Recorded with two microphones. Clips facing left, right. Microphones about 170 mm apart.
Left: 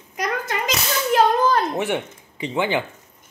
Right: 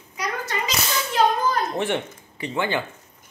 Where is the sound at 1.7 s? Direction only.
15° left (ahead or behind).